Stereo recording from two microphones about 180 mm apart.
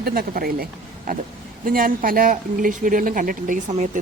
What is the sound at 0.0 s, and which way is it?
Speech, 55° right (ahead or behind).